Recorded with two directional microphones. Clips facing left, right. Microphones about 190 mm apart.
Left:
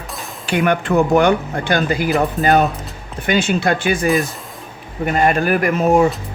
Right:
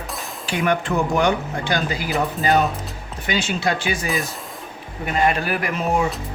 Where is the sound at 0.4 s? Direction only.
60° left (ahead or behind).